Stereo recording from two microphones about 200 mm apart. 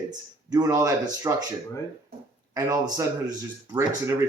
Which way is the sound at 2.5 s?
15° right (ahead or behind).